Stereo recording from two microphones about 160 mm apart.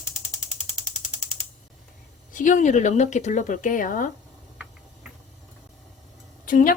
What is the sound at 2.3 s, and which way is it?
Speech, 55° left (ahead or behind).